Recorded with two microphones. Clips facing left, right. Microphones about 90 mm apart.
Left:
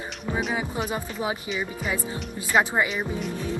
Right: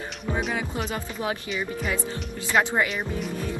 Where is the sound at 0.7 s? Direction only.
10° left (ahead or behind).